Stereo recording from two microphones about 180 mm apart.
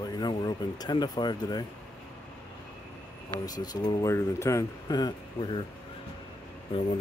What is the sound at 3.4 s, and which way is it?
Speech, 20° left (ahead or behind).